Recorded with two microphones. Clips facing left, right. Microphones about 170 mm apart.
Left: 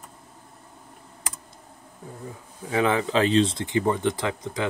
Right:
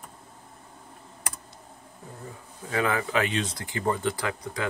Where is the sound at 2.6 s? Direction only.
20° left (ahead or behind).